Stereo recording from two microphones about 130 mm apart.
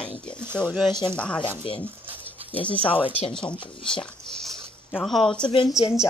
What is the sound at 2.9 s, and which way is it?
Speech, 40° left (ahead or behind).